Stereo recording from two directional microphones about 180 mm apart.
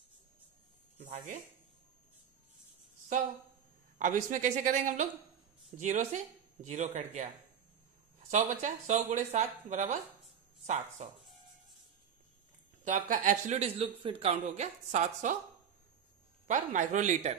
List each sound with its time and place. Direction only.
0.9 s a sound: 45° right (ahead or behind)
4.0 s speech: 45° right (ahead or behind)
8.3 s speech: 40° right (ahead or behind)
11.0 s speech: 40° right (ahead or behind)
12.8 s speech: 45° right (ahead or behind)
16.4 s speech: 45° right (ahead or behind)